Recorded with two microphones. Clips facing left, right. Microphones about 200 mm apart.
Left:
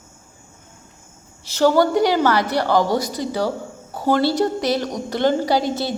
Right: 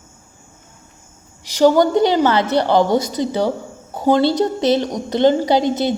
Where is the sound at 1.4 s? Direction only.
15° right (ahead or behind).